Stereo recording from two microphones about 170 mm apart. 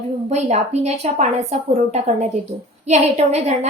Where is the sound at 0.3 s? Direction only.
40° right (ahead or behind).